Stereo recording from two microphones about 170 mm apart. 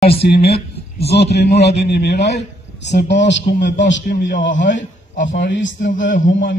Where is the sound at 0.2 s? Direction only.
70° left (ahead or behind).